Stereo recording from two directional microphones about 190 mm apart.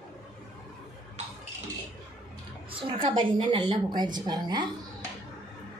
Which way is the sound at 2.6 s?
25° right (ahead or behind).